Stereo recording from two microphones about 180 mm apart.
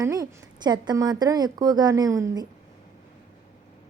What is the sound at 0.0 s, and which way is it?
Speech, 20° right (ahead or behind).